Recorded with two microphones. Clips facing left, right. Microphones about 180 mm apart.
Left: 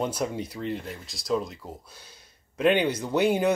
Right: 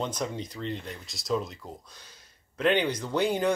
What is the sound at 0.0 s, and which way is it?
Speech, 10° left (ahead or behind).